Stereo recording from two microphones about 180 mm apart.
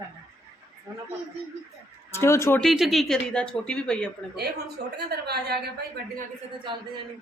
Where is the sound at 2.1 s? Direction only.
15° left (ahead or behind).